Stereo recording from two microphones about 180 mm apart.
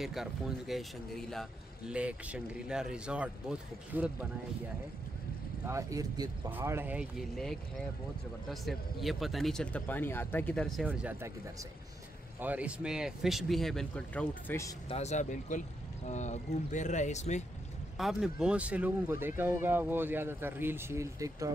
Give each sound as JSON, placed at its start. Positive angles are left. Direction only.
{"t": 0.0, "sound": "speech", "side_deg": 0}
{"t": 5.7, "sound": "speech", "side_deg": -15}
{"t": 10.9, "sound": "speech", "side_deg": -10}
{"t": 12.4, "sound": "speech", "side_deg": -10}
{"t": 14.9, "sound": "speech", "side_deg": 40}
{"t": 17.9, "sound": "speech", "side_deg": 0}